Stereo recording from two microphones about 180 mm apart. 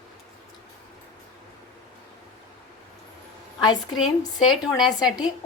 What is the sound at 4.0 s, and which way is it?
Speech, centre (ahead or behind).